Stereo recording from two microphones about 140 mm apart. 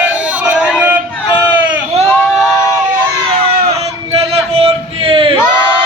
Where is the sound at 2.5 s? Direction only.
20° left (ahead or behind).